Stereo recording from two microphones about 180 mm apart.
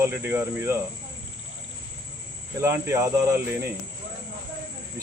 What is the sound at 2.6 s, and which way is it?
Cricket, 15° right (ahead or behind).